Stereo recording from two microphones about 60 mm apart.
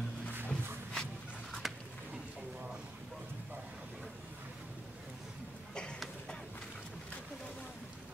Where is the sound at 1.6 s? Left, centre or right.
Centre.